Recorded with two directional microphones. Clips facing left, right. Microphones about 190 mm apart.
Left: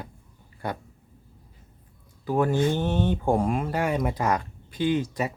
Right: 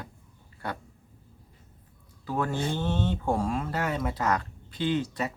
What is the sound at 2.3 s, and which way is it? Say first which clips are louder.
Speech: left 6 dB; 15° left (ahead or behind).